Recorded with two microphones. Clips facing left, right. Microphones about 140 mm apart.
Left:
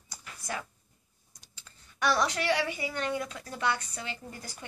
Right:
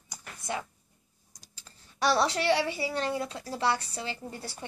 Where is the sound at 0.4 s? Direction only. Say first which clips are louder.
Right 3 dB; 20° right (ahead or behind).